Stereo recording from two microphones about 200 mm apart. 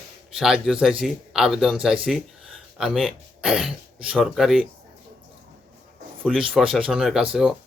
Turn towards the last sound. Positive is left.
turn(degrees=-5)  # may be behind; listen again after turning